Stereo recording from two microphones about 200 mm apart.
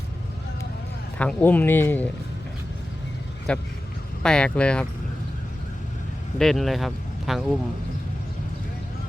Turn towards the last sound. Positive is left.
turn(degrees=0)  # may be behind; listen again after turning